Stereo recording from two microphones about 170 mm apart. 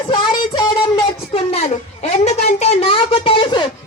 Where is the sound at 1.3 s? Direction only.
35° left (ahead or behind).